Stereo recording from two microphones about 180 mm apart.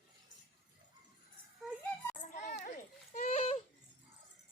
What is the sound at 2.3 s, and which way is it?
Children playing, 45° left (ahead or behind).